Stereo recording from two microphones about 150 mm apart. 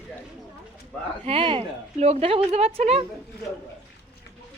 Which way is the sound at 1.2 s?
35° right (ahead or behind).